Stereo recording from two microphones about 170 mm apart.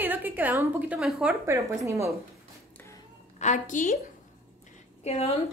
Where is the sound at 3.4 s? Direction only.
45° left (ahead or behind).